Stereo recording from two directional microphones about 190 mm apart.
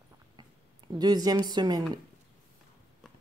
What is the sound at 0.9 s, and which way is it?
Speech, 20° right (ahead or behind).